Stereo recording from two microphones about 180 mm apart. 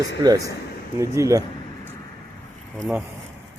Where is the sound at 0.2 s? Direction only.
20° right (ahead or behind).